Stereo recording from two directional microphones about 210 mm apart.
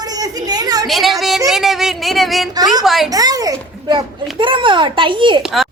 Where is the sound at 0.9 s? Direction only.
Centre (ahead or behind).